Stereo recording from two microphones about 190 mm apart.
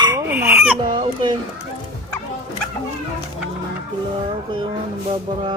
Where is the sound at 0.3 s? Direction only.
10° right (ahead or behind).